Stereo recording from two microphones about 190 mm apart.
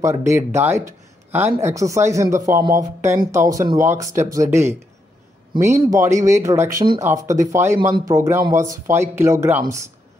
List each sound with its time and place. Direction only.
0.0 s speech: 15° right (ahead or behind)